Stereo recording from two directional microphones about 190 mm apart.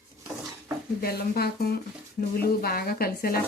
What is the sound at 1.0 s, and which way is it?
Speech, 55° left (ahead or behind).